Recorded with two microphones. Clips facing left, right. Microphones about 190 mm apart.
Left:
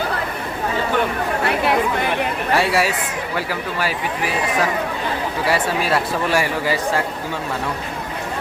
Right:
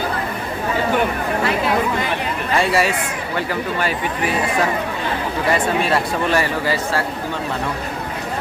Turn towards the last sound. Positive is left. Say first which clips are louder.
# even
turn(degrees=15)  # may be behind; listen again after turning